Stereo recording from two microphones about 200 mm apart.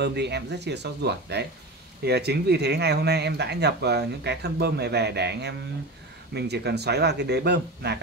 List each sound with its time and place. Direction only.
0.0 s speech: 55° right (ahead or behind)